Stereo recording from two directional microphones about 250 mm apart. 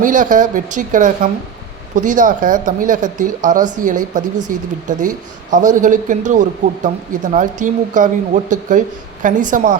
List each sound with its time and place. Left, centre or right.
0.0 s speech: right